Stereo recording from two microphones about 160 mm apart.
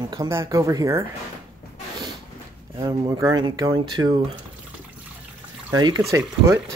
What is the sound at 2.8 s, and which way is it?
Speech, 20° right (ahead or behind).